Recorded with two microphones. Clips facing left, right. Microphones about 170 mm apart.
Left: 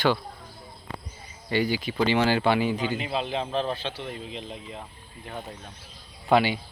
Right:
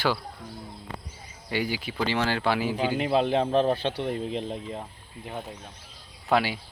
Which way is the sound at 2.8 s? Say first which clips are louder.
Right 5 dB; 50° right (ahead or behind).